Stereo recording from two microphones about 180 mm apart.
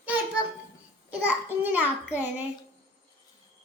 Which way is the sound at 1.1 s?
10° right (ahead or behind).